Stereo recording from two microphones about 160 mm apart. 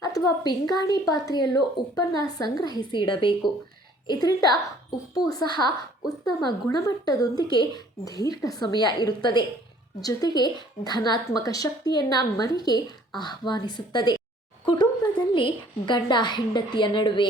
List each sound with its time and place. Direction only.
0.0 s a woman's voice: 20° left (ahead or behind)